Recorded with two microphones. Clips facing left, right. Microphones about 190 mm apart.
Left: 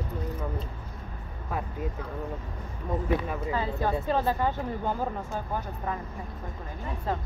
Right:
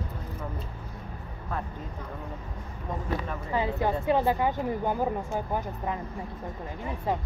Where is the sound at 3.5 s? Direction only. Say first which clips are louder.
Right 3 dB; 15° right (ahead or behind).